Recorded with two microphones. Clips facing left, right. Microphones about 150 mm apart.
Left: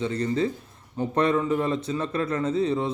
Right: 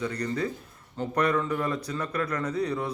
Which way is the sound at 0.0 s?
25° left (ahead or behind).